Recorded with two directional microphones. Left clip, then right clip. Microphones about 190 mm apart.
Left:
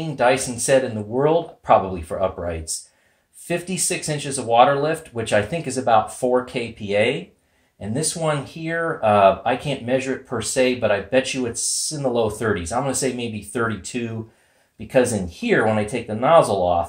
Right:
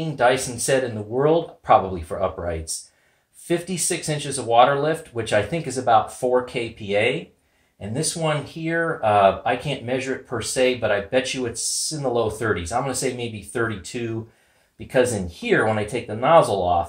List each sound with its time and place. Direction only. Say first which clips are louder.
0.0 s speech: left 1 dB; 20° left (ahead or behind)